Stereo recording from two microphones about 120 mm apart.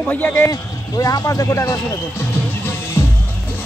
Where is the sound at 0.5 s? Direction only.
30° left (ahead or behind).